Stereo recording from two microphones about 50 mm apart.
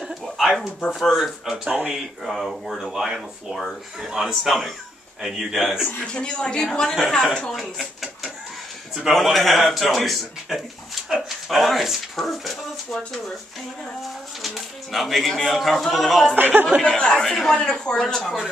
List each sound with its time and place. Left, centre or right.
0.0 s a sound: centre
0.9 s speech: centre
5.9 s a man's voice: centre
7.5 s a sound: centre
9.1 s speech: centre
14.4 s speech: centre
16.3 s speech: right
16.8 s a man's voice: centre